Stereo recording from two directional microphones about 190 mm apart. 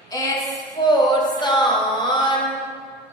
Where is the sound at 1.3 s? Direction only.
25° left (ahead or behind).